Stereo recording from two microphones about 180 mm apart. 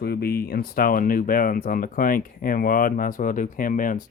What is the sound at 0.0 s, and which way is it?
Speech, 60° left (ahead or behind).